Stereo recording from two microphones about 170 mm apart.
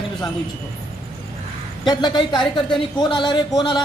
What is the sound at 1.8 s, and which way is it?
A woman's voice, 25° left (ahead or behind).